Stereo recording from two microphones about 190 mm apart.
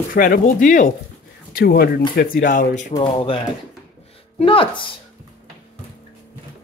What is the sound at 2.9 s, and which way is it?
Speech, 25° left (ahead or behind).